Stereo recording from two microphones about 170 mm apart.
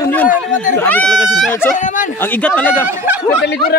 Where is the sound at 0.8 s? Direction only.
10° left (ahead or behind).